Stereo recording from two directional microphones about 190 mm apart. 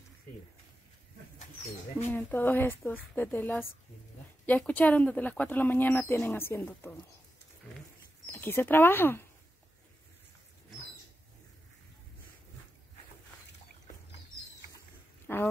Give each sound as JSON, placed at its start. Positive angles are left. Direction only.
{"t": 2.0, "sound": "speech", "side_deg": 10}
{"t": 8.3, "sound": "speech", "side_deg": 10}
{"t": 15.2, "sound": "speech", "side_deg": 10}